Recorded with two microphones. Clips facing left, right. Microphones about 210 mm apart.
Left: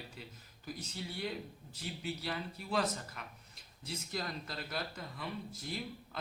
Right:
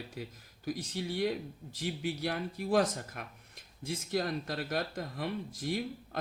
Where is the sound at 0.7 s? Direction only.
90° right.